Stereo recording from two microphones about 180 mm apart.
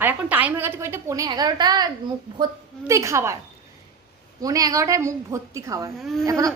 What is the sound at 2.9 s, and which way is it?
Speech, 15° right (ahead or behind).